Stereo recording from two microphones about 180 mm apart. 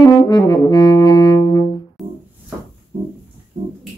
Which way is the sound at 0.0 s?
20° left (ahead or behind).